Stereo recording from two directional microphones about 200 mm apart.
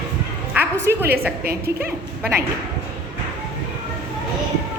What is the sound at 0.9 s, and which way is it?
Speech, 15° right (ahead or behind).